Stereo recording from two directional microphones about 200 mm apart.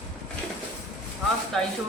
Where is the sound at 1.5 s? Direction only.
Centre (ahead or behind).